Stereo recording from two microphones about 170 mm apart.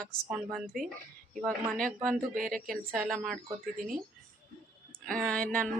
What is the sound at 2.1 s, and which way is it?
Speech, 50° right (ahead or behind).